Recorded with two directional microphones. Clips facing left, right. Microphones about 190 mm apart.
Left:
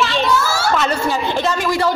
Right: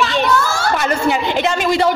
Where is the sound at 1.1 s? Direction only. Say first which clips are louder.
Right 2 dB; 15° right (ahead or behind).